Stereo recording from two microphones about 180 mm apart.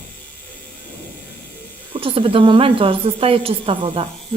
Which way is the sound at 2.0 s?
30° right (ahead or behind).